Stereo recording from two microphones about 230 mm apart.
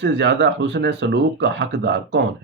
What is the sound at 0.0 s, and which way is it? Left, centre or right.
Speech, right.